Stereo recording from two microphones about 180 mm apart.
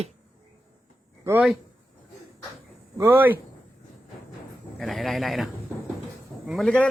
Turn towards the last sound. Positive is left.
turn(degrees=5)  # may be behind; listen again after turning